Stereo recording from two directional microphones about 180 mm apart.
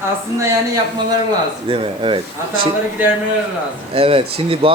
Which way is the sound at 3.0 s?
10° right (ahead or behind).